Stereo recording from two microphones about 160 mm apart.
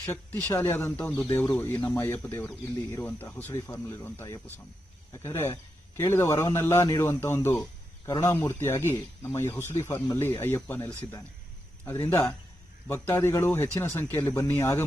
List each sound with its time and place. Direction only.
0.4 s speech: 15° left (ahead or behind)
11.9 s speech: 15° left (ahead or behind)